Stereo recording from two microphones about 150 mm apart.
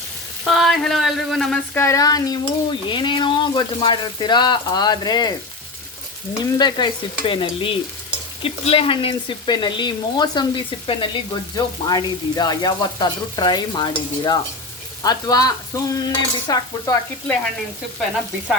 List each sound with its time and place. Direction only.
0.5 s speech: centre (ahead or behind)
1.7 s frying: 20° left (ahead or behind)
6.4 s frying: 30° left (ahead or behind)